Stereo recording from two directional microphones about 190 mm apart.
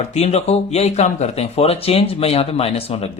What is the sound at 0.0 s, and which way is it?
Speech, 35° left (ahead or behind).